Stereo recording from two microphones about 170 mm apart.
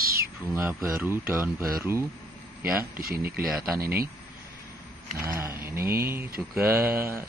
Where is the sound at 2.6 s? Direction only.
60° right (ahead or behind).